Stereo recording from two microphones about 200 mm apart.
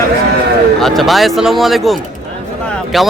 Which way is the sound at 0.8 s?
Centre (ahead or behind).